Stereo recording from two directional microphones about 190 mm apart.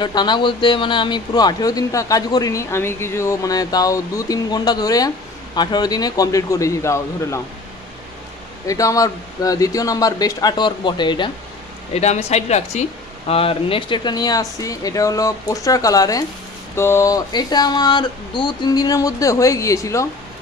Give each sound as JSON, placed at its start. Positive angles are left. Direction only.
{"t": 0.0, "sound": "speech", "side_deg": 25}
{"t": 8.6, "sound": "speech", "side_deg": 15}
{"t": 11.9, "sound": "speech", "side_deg": 35}